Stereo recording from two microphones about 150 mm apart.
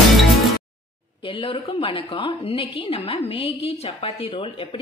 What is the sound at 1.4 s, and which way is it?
A woman's voice, 35° left (ahead or behind).